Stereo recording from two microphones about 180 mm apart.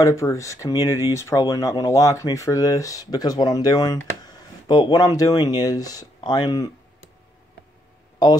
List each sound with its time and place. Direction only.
0.0 s speech: 15° left (ahead or behind)